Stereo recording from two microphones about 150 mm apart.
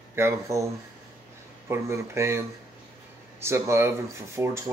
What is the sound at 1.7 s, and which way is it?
Speech, 20° right (ahead or behind).